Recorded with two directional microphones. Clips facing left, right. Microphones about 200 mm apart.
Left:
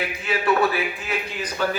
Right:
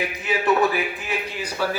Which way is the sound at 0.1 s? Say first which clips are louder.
Right 1 dB; 15° right (ahead or behind).